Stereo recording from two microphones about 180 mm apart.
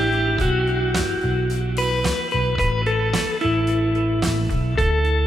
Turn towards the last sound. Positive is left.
turn(degrees=0)  # may be behind; listen again after turning